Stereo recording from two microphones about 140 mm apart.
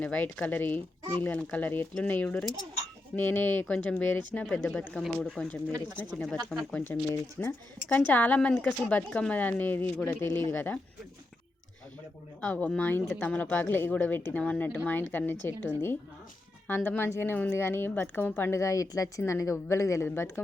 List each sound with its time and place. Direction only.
0.0 s speech: 10° left (ahead or behind)
12.4 s speech: 10° left (ahead or behind)